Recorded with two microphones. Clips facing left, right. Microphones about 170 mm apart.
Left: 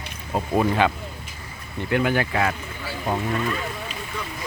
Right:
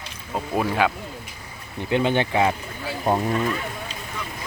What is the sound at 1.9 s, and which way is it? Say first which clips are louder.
Speech: right 1 dB; 25° right (ahead or behind).